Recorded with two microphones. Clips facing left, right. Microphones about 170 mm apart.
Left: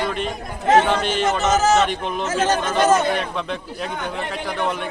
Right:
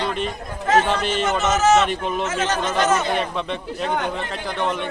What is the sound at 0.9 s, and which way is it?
Speech, centre (ahead or behind).